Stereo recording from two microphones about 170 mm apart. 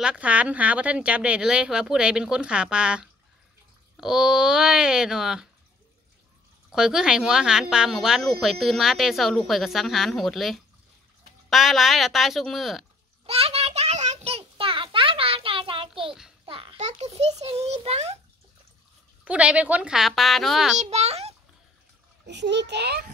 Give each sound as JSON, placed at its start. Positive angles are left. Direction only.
{"t": 0.0, "sound": "speech", "side_deg": -5}
{"t": 6.7, "sound": "speech", "side_deg": -5}
{"t": 13.3, "sound": "a sound", "side_deg": -35}
{"t": 19.2, "sound": "speech", "side_deg": -5}
{"t": 20.8, "sound": "a child's voice", "side_deg": -40}
{"t": 22.2, "sound": "a child's voice", "side_deg": -90}